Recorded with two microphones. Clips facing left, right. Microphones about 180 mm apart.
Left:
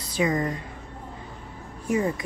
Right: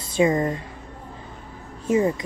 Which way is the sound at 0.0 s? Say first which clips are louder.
Right 5 dB; 25° right (ahead or behind).